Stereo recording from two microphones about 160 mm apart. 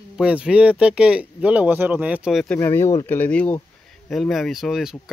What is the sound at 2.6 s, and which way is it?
Speech, 15° left (ahead or behind).